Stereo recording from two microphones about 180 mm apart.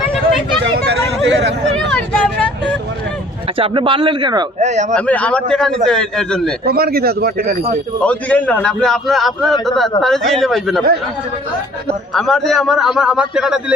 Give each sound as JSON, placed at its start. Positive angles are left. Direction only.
{"t": 0.6, "sound": "speech", "side_deg": -80}
{"t": 1.9, "sound": "vehicle", "side_deg": 5}
{"t": 3.6, "sound": "speech", "side_deg": -30}
{"t": 4.6, "sound": "speech", "side_deg": -40}
{"t": 4.9, "sound": "a man's voice", "side_deg": 5}
{"t": 6.7, "sound": "a man's voice", "side_deg": -60}
{"t": 8.0, "sound": "a man's voice", "side_deg": 5}
{"t": 12.1, "sound": "a man's voice", "side_deg": 0}